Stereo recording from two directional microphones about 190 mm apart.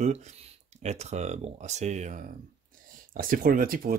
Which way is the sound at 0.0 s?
35° right (ahead or behind).